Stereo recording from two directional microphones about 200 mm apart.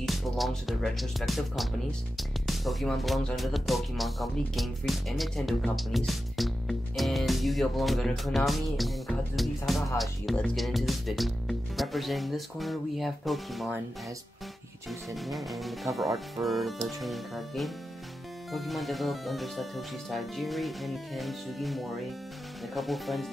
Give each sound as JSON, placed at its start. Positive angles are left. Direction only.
{"t": 0.0, "sound": "speech", "side_deg": 0}
{"t": 14.9, "sound": "speech", "side_deg": 0}